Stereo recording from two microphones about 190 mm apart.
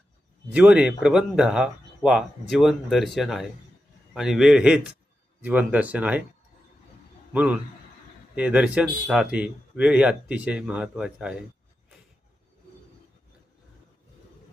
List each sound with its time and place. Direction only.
0.5 s speech: 5° right (ahead or behind)
7.3 s speech: 5° right (ahead or behind)